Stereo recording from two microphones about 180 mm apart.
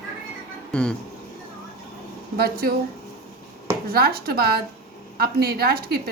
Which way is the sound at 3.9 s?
60° right (ahead or behind).